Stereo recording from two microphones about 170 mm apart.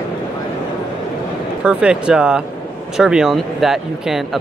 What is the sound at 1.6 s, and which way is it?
Speech, 5° right (ahead or behind).